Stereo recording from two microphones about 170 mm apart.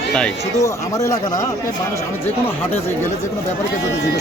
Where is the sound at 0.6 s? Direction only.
20° left (ahead or behind).